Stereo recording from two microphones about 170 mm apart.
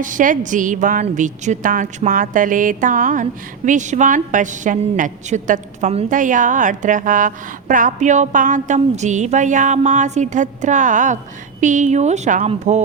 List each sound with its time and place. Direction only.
0.0 s a woman's voice: 50° right (ahead or behind)